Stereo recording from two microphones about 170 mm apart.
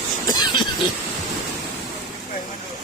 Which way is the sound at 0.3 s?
25° left (ahead or behind).